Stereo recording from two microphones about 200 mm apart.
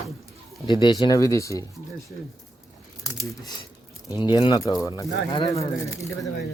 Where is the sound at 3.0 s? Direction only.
15° left (ahead or behind).